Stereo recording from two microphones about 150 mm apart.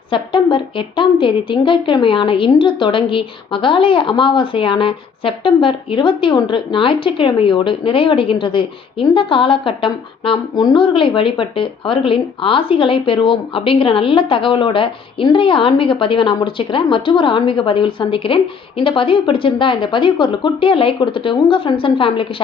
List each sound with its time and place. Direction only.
0.1 s a woman's voice: 35° left (ahead or behind)